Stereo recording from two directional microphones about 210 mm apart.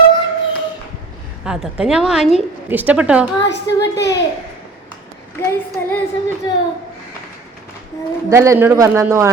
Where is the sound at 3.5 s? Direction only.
55° left (ahead or behind).